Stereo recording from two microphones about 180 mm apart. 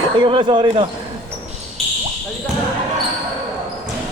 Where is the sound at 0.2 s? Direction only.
30° right (ahead or behind).